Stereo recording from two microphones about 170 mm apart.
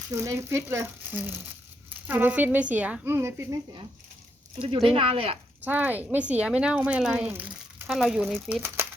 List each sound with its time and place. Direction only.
0.1 s speech: 15° right (ahead or behind)
4.9 s speech: 35° right (ahead or behind)
5.6 s speech: 10° right (ahead or behind)
8.6 s a sound: 15° right (ahead or behind)